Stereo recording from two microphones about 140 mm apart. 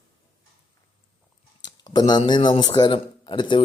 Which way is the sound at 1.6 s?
30° left (ahead or behind).